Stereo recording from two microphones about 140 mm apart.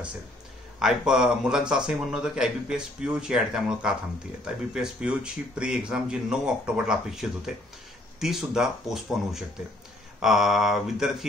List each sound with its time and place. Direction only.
0.7 s a man's voice: 5° right (ahead or behind)